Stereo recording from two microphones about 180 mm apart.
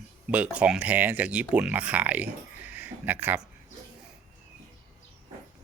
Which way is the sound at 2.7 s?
10° right (ahead or behind).